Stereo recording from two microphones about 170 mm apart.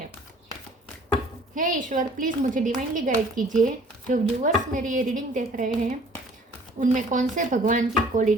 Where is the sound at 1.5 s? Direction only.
50° right (ahead or behind).